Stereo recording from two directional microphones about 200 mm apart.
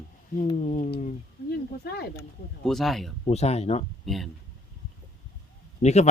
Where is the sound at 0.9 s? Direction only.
40° left (ahead or behind).